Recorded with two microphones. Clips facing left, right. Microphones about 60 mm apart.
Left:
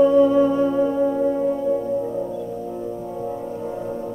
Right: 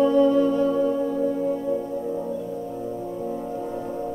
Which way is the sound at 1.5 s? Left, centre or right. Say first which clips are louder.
Left 4 dB; centre.